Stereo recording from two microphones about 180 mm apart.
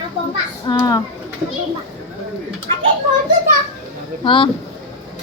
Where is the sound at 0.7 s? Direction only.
25° left (ahead or behind).